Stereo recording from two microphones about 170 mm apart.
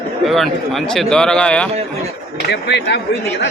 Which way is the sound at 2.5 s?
90° left.